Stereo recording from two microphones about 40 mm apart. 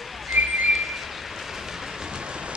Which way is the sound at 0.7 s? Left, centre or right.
Centre.